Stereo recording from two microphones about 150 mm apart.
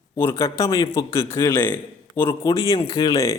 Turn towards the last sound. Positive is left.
turn(degrees=25)  # may be behind; listen again after turning